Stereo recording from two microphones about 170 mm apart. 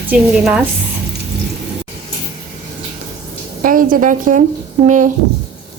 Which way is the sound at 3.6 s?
55° right (ahead or behind).